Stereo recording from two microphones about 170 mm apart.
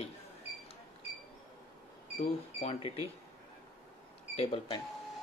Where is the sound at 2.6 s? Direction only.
35° left (ahead or behind).